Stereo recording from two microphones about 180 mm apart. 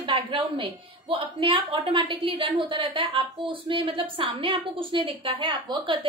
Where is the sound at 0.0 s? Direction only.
30° right (ahead or behind).